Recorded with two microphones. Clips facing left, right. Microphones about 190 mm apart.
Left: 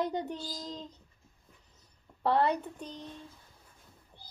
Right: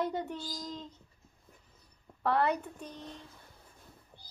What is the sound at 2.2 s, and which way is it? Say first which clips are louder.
Speech: left 2 dB; 30° left (ahead or behind).